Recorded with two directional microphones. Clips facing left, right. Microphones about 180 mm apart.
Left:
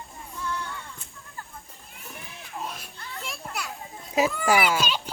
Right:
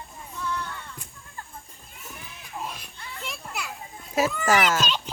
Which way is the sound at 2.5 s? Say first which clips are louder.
Even; centre (ahead or behind).